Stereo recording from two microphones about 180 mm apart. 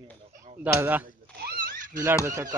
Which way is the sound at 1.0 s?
60° right (ahead or behind).